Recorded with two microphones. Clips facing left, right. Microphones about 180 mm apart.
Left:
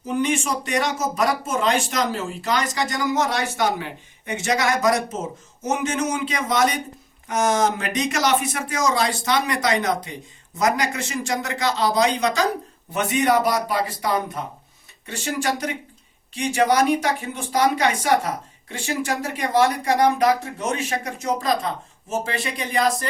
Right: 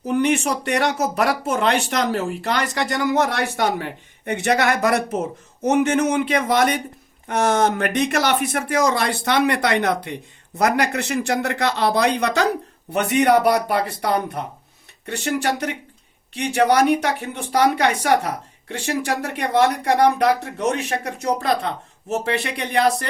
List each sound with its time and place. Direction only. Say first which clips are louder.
0.0 s speech: right 4 dB; 65° right (ahead or behind)